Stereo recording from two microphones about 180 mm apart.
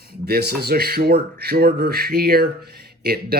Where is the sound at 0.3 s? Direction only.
60° right (ahead or behind).